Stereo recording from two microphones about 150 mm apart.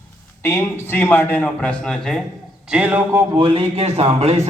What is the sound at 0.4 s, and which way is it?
A man's voice, 15° left (ahead or behind).